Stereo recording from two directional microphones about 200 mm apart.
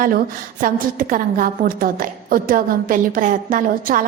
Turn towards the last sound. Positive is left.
turn(degrees=-45)  # may be behind; listen again after turning